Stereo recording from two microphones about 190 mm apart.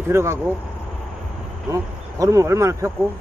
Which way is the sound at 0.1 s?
15° right (ahead or behind).